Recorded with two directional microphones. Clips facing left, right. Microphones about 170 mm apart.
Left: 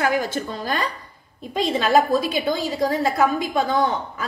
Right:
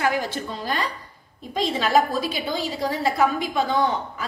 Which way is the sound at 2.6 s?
45° left (ahead or behind).